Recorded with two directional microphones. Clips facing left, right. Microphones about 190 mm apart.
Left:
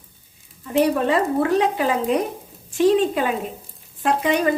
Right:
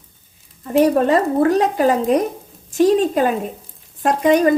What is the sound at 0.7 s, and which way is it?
A woman's voice, 45° right (ahead or behind).